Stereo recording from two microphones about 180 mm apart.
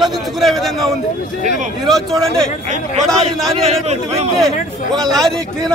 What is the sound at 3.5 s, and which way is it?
Speech, 35° right (ahead or behind).